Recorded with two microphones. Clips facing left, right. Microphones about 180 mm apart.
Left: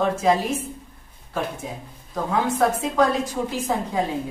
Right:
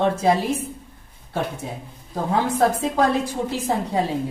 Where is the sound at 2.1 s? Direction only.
35° right (ahead or behind).